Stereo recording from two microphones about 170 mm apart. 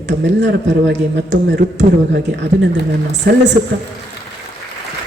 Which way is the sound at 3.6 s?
35° right (ahead or behind).